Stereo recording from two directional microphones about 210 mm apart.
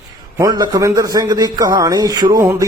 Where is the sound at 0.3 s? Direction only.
20° right (ahead or behind).